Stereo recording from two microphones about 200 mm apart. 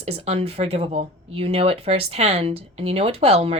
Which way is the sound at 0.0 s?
30° right (ahead or behind).